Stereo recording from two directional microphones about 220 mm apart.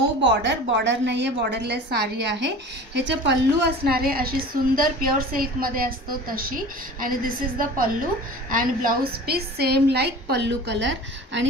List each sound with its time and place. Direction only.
0.3 s a woman's voice: 55° right (ahead or behind)